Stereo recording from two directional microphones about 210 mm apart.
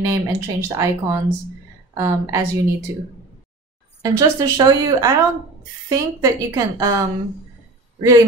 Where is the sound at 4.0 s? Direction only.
15° right (ahead or behind).